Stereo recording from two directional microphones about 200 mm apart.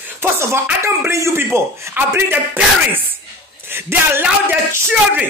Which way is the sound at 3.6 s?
10° right (ahead or behind).